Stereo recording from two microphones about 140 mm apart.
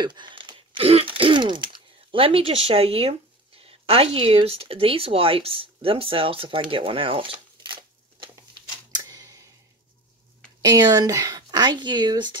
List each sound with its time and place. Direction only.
0.0 s speech: 35° right (ahead or behind)
8.9 s a sound: 25° right (ahead or behind)
10.6 s speech: 30° right (ahead or behind)